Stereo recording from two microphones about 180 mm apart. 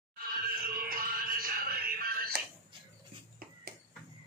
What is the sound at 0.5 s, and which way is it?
Music, 55° right (ahead or behind).